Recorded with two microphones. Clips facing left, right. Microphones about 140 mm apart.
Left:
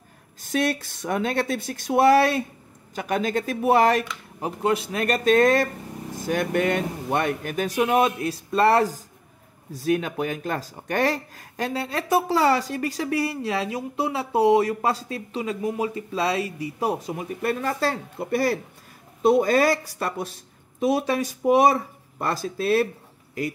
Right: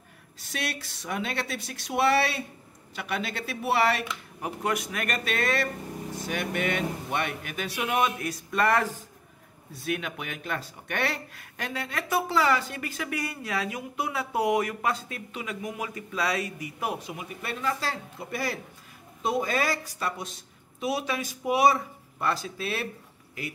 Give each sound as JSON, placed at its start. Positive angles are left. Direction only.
{"t": 0.4, "sound": "speech", "side_deg": 50}
{"t": 4.4, "sound": "speech", "side_deg": 30}